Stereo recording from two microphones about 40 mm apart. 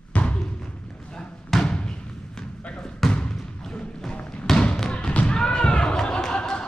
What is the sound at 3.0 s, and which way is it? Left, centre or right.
Basketball bounce, centre.